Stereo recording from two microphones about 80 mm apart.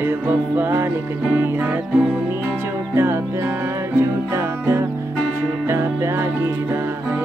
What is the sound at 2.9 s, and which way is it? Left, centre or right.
Music, right.